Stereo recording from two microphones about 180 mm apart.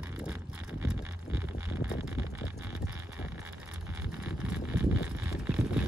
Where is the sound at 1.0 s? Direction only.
10° right (ahead or behind).